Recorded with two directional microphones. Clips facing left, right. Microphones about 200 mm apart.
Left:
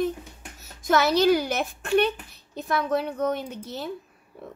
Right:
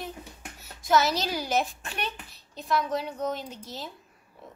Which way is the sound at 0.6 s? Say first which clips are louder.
Left 2 dB; 50° left (ahead or behind).